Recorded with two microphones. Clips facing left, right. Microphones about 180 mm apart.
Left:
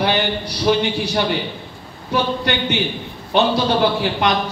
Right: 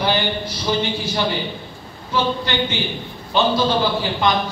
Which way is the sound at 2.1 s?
65° left (ahead or behind).